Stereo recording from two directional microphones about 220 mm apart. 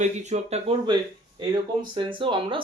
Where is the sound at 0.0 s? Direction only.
30° right (ahead or behind).